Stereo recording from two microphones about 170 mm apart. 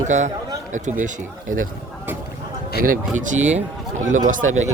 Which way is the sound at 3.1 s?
45° right (ahead or behind).